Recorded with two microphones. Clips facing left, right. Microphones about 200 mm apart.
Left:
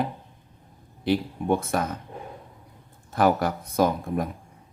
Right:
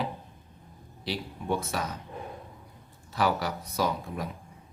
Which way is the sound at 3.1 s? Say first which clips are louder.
Left 6 dB; 50° left (ahead or behind).